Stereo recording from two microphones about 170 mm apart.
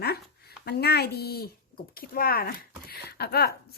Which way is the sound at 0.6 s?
70° left (ahead or behind).